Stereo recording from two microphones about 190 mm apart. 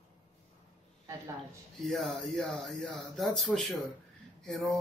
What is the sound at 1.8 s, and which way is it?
Music, centre (ahead or behind).